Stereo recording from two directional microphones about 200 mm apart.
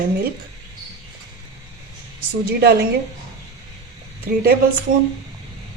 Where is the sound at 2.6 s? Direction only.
50° right (ahead or behind).